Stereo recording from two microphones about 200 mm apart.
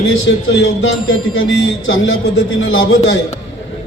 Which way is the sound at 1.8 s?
80° left.